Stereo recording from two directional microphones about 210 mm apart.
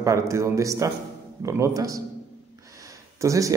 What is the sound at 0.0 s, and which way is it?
A man's voice, 15° right (ahead or behind).